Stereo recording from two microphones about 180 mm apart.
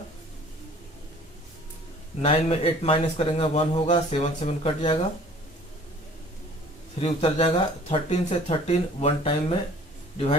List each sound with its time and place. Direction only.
2.2 s a man's voice: 35° left (ahead or behind)
7.0 s a man's voice: 30° left (ahead or behind)